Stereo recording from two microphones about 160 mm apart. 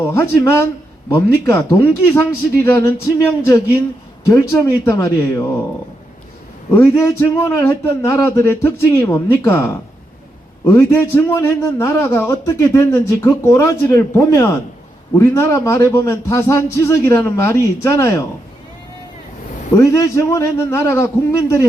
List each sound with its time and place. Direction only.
0.1 s a man's voice: 15° left (ahead or behind)
6.7 s a man's voice: 15° left (ahead or behind)
19.7 s a man's voice: 20° left (ahead or behind)